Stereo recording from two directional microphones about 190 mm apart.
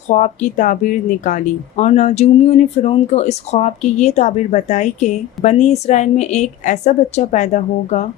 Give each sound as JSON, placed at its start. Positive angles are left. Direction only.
{"t": 0.1, "sound": "speech", "side_deg": 40}